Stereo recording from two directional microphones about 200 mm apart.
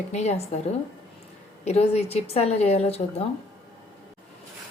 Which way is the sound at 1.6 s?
30° left (ahead or behind).